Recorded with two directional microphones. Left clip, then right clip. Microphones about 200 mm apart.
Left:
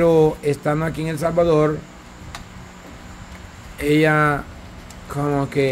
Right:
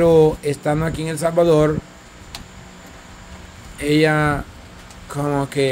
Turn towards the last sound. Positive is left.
turn(degrees=-15)  # may be behind; listen again after turning